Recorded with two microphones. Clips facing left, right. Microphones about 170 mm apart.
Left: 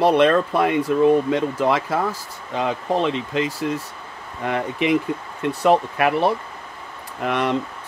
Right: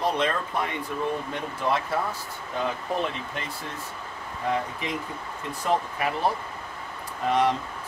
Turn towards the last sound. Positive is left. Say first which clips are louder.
# left 1 dB
turn(degrees=70)  # may be behind; listen again after turning